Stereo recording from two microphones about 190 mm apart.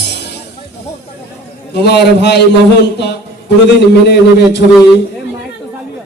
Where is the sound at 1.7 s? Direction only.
60° left (ahead or behind).